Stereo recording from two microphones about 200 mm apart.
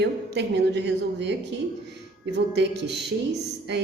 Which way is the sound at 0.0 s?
55° right (ahead or behind).